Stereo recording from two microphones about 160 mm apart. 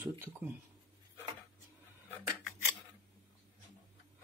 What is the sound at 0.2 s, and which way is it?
Speech, 15° right (ahead or behind).